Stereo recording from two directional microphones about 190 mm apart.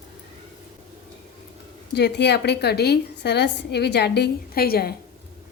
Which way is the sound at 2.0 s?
60° left (ahead or behind).